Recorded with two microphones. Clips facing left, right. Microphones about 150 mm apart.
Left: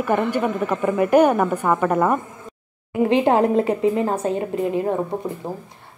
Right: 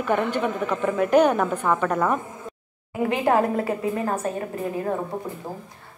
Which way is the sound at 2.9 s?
25° left (ahead or behind).